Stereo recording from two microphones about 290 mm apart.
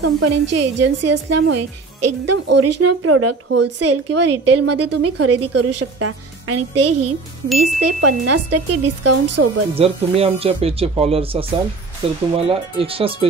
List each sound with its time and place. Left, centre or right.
0.0 s a woman's voice: right
9.8 s speech: centre